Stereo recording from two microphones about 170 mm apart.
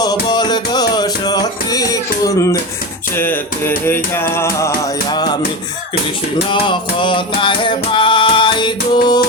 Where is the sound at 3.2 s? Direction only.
15° left (ahead or behind).